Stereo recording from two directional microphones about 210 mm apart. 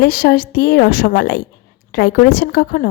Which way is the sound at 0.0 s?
50° left (ahead or behind).